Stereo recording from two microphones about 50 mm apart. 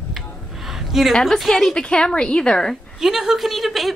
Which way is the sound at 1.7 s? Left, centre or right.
Centre.